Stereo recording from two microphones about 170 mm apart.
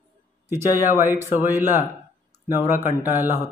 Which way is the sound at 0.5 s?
15° right (ahead or behind).